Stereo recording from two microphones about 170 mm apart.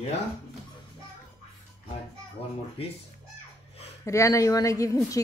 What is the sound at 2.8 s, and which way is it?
Speech, 35° left (ahead or behind).